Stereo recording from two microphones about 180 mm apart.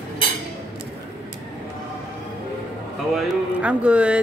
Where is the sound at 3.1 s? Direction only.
5° right (ahead or behind).